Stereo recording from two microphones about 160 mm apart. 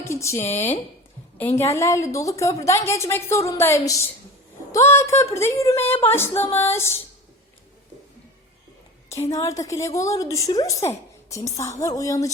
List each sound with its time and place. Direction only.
0.0 s a sound: 15° left (ahead or behind)
0.5 s a woman's voice: 15° left (ahead or behind)
9.1 s a woman's voice: 20° left (ahead or behind)